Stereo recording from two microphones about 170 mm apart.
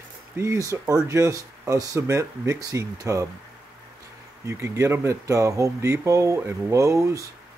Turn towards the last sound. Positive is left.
turn(degrees=-20)  # may be behind; listen again after turning